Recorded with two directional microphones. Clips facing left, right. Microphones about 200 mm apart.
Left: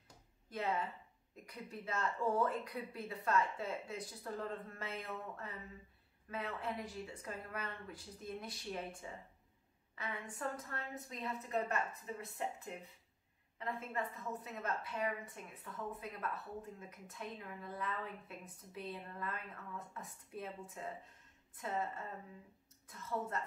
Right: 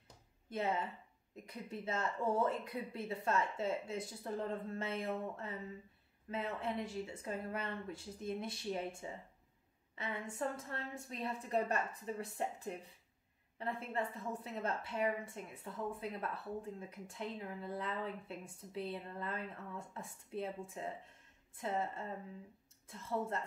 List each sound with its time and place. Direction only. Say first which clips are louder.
0.5 s a woman's voice: right 1 dB; 25° right (ahead or behind)